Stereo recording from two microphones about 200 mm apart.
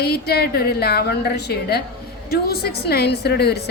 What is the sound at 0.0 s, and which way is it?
A woman's voice, 50° left (ahead or behind).